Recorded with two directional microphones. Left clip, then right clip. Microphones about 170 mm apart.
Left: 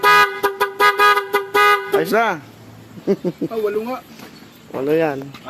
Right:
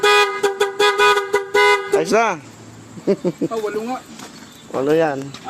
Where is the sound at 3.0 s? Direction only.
Centre (ahead or behind).